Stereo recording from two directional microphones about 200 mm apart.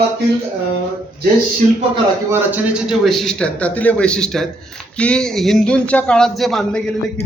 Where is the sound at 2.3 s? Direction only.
5° right (ahead or behind).